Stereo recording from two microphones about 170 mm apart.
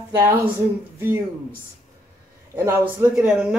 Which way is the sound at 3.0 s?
5° right (ahead or behind).